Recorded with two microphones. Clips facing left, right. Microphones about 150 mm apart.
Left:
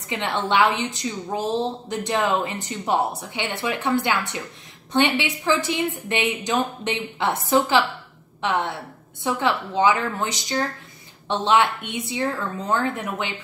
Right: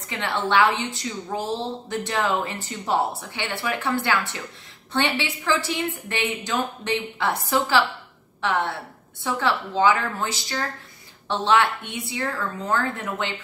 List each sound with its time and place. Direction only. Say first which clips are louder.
0.1 s a woman's voice: even; 20° left (ahead or behind)